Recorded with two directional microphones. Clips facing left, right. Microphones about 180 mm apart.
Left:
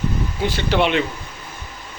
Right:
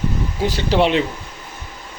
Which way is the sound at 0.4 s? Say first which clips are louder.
Right 2 dB; 35° right (ahead or behind).